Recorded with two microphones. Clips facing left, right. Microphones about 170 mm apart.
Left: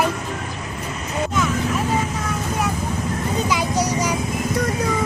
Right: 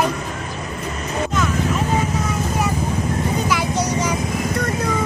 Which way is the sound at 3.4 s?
20° left (ahead or behind).